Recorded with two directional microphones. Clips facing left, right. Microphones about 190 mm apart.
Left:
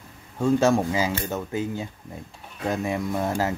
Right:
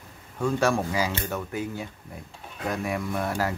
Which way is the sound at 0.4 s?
25° left (ahead or behind).